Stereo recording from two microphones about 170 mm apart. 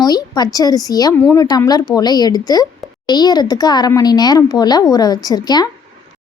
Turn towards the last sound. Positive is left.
turn(degrees=25)  # may be behind; listen again after turning